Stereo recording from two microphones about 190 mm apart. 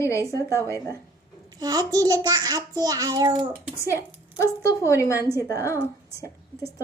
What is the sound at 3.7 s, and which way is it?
A woman's voice, 15° left (ahead or behind).